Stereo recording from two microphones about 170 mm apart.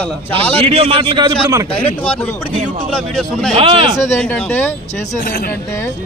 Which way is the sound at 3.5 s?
30° right (ahead or behind).